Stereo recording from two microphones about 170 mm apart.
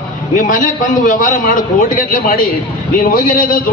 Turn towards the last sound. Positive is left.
turn(degrees=55)  # may be behind; listen again after turning